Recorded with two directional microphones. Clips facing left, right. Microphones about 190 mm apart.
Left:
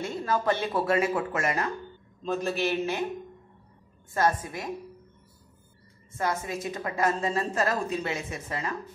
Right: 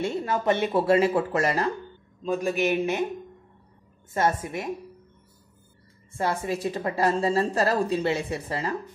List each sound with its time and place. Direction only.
0.0 s speech: 25° right (ahead or behind)
2.2 s speech: 10° right (ahead or behind)
4.1 s speech: 25° right (ahead or behind)
6.1 s a woman's voice: 30° right (ahead or behind)